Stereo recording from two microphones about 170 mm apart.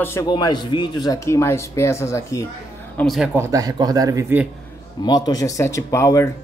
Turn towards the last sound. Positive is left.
turn(degrees=20)  # may be behind; listen again after turning